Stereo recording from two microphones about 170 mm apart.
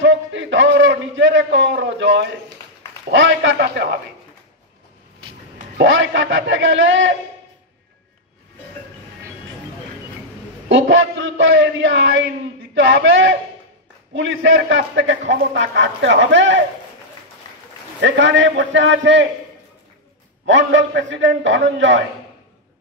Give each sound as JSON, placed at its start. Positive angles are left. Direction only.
{"t": 0.0, "sound": "a sound", "side_deg": -90}
{"t": 3.1, "sound": "a man's voice", "side_deg": -90}
{"t": 5.8, "sound": "a sound", "side_deg": -90}
{"t": 10.7, "sound": "a man's voice", "side_deg": -90}
{"t": 18.0, "sound": "a man's voice", "side_deg": -90}
{"t": 20.4, "sound": "a man's voice", "side_deg": -90}